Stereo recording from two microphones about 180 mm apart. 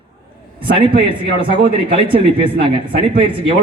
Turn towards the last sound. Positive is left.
turn(degrees=-30)  # may be behind; listen again after turning